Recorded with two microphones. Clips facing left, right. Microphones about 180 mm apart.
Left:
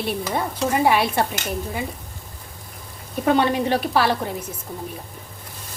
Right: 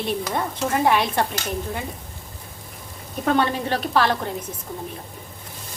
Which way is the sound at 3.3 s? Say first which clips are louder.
Left 3 dB; 15° left (ahead or behind).